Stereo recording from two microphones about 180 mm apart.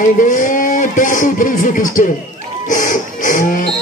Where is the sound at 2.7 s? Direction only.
45° left (ahead or behind).